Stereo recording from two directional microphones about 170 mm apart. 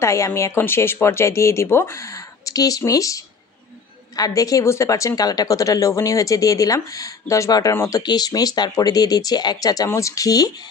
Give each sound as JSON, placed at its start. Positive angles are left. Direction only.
{"t": 0.0, "sound": "speech", "side_deg": 15}
{"t": 4.2, "sound": "speech", "side_deg": 20}